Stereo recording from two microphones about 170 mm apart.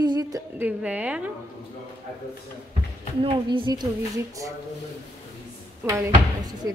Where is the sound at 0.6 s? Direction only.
10° right (ahead or behind).